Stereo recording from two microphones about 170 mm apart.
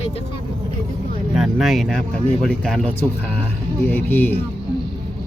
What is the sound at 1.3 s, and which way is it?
Speech, centre (ahead or behind).